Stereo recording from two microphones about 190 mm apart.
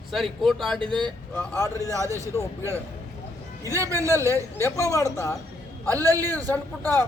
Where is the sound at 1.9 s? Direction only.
15° right (ahead or behind).